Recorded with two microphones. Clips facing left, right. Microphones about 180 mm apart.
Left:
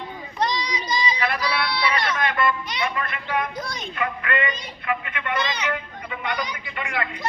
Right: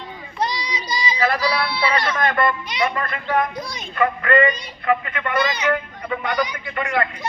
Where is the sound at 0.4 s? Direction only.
10° right (ahead or behind).